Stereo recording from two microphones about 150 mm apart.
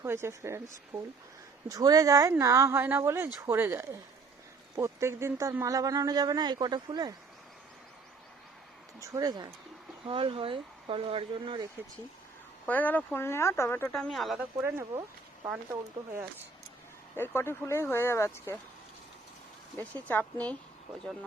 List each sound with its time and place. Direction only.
0.0 s a woman's voice: 15° right (ahead or behind)
1.6 s a woman's voice: 25° right (ahead or behind)
9.0 s speech: 25° right (ahead or behind)
10.1 s speech: 35° right (ahead or behind)
12.6 s speech: 10° left (ahead or behind)
13.9 s speech: centre (ahead or behind)
15.4 s a woman's voice: 10° right (ahead or behind)
17.2 s speech: 15° left (ahead or behind)
19.7 s speech: 10° left (ahead or behind)